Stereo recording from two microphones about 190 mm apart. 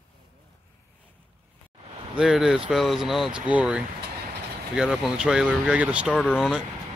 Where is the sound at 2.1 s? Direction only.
5° right (ahead or behind).